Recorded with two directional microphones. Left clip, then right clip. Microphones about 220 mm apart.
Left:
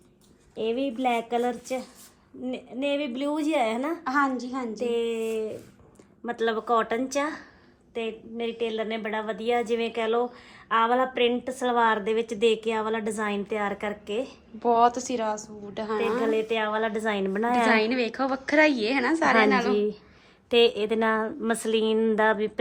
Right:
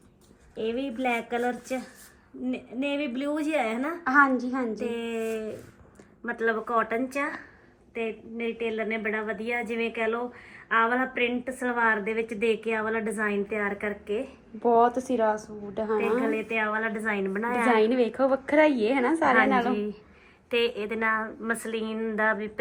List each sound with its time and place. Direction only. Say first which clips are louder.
0.5 s a woman's voice: left 3 dB; centre (ahead or behind)
4.0 s a woman's voice: right 5 dB; 15° left (ahead or behind)
4.8 s a woman's voice: left 4 dB; centre (ahead or behind)
6.4 s a woman's voice: left 2 dB; 45° left (ahead or behind)
14.6 s a woman's voice: even; 5° left (ahead or behind)
16.3 s a woman's voice: left 2 dB; 45° left (ahead or behind)
17.7 s a woman's voice: right 1 dB; 5° left (ahead or behind)
19.7 s a woman's voice: left 6 dB; 50° left (ahead or behind)